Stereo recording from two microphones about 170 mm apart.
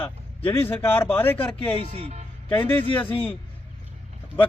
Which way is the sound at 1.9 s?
40° right (ahead or behind).